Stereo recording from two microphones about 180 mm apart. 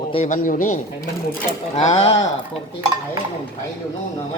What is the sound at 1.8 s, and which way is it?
Speech, 35° left (ahead or behind).